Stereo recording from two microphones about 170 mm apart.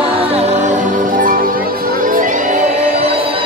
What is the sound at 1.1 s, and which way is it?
Music, 55° right (ahead or behind).